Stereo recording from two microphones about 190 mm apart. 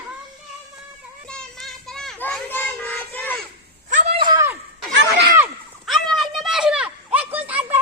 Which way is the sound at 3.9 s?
40° right (ahead or behind).